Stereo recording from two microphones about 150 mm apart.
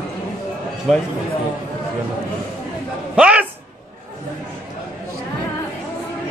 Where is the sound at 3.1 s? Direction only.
10° right (ahead or behind).